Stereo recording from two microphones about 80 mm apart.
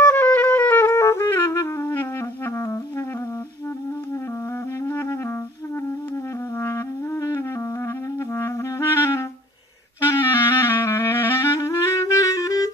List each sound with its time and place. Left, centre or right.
0.0 s music: left
4.8 s music: left
6.6 s music: left
8.4 s clarinet: left
10.2 s clarinet: left